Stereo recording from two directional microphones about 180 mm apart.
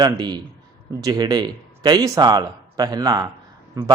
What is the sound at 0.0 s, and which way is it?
A man's voice, 20° right (ahead or behind).